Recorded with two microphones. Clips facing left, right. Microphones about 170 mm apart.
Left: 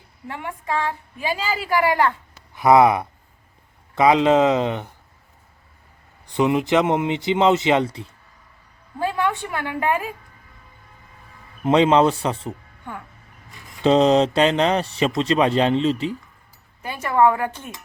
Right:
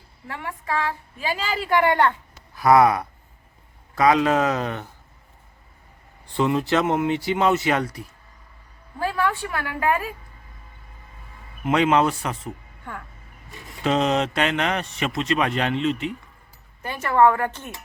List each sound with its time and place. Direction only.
0.3 s a woman's voice: 20° left (ahead or behind); by 2.1 s 5° left (ahead or behind)
2.6 s speech: 20° left (ahead or behind)
6.2 s a woman's voice: 15° left (ahead or behind)
11.6 s speech: 30° left (ahead or behind)
13.8 s speech: 30° left (ahead or behind)
16.8 s a woman's voice: 10° left (ahead or behind)